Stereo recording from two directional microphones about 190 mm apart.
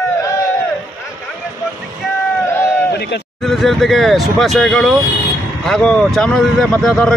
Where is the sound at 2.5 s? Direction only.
15° left (ahead or behind).